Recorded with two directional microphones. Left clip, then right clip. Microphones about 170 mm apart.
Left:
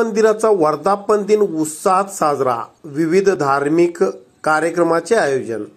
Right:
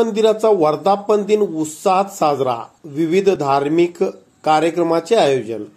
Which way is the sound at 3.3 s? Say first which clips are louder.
Even; 5° left (ahead or behind).